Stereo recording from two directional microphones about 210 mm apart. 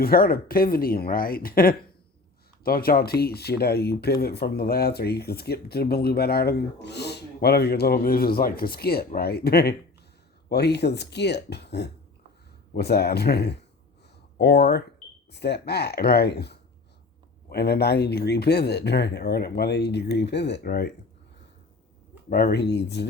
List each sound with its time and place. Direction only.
0.0 s speech: 45° left (ahead or behind)
22.3 s speech: 45° left (ahead or behind)